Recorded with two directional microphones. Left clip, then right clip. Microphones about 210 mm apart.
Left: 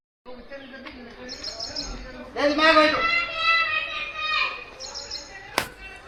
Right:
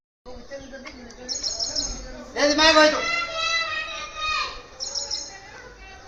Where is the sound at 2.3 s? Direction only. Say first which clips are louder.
Right 1 dB; 20° right (ahead or behind).